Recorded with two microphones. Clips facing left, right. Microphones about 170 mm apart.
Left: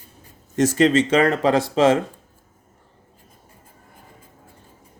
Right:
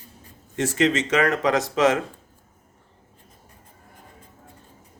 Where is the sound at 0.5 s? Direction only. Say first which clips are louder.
Left 5 dB; 40° left (ahead or behind).